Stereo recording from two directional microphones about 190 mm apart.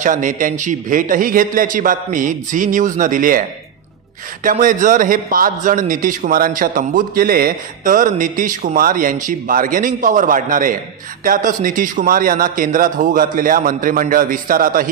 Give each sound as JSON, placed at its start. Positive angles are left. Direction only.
{"t": 0.0, "sound": "a man's voice", "side_deg": -40}